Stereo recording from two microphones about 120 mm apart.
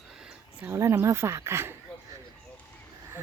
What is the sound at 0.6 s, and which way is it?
Speech, 25° right (ahead or behind).